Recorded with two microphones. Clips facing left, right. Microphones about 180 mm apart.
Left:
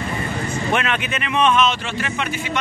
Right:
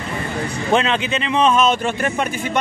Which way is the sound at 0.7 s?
30° right (ahead or behind).